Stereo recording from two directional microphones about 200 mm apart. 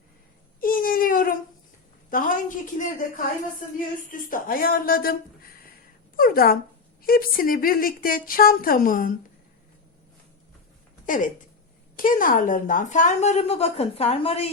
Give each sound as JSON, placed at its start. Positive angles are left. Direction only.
{"t": 0.6, "sound": "baby cry", "side_deg": 45}
{"t": 2.0, "sound": "a sound", "side_deg": 45}
{"t": 4.3, "sound": "a woman's voice", "side_deg": 45}
{"t": 6.1, "sound": "a woman's voice", "side_deg": 45}
{"t": 11.0, "sound": "a sound", "side_deg": 40}
{"t": 11.9, "sound": "a woman's voice", "side_deg": 45}